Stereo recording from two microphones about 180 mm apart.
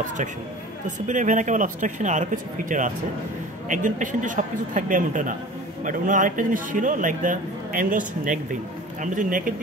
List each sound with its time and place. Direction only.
0.8 s a man's voice: 45° right (ahead or behind)